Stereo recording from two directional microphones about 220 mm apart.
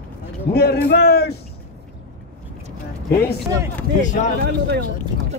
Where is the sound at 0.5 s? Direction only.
45° left (ahead or behind).